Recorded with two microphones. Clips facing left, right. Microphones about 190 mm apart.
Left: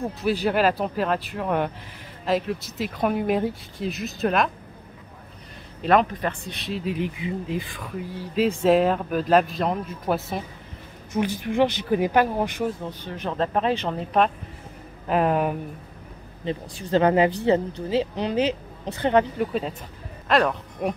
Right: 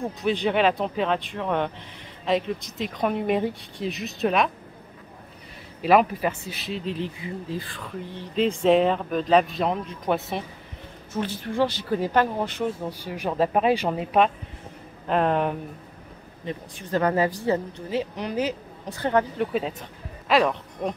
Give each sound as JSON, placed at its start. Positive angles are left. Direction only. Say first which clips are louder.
{"t": 0.0, "sound": "speech", "louder": "left 1 dB", "side_deg": 5}
{"t": 5.8, "sound": "speech", "louder": "right 1 dB", "side_deg": -5}
{"t": 11.1, "sound": "speech", "louder": "left 3 dB", "side_deg": 15}
{"t": 12.8, "sound": "speech", "louder": "right 2 dB", "side_deg": -10}
{"t": 15.0, "sound": "speech", "louder": "left 1 dB", "side_deg": 5}
{"t": 16.4, "sound": "speech", "louder": "left 4 dB", "side_deg": 25}
{"t": 19.3, "sound": "speech", "louder": "even", "side_deg": 0}
{"t": 20.8, "sound": "speech", "louder": "left 2 dB", "side_deg": 10}